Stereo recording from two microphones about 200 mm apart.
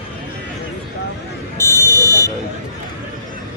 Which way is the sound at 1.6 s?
15° left (ahead or behind).